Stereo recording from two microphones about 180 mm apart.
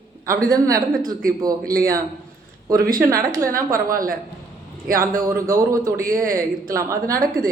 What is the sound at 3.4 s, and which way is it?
A woman's voice, 50° right (ahead or behind).